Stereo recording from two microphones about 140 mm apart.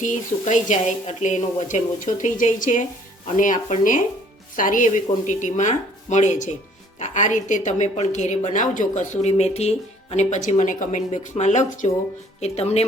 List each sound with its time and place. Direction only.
0.0 s a woman's voice: 60° left (ahead or behind)